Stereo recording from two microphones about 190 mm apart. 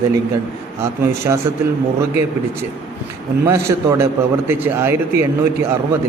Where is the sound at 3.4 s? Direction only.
15° right (ahead or behind).